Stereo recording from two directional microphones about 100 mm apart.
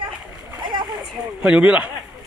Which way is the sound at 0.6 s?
45° right (ahead or behind).